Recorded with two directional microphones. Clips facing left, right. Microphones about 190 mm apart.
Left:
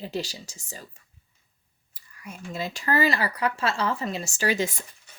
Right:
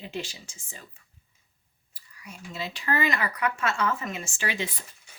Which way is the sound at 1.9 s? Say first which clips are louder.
Left 4 dB; 50° left (ahead or behind).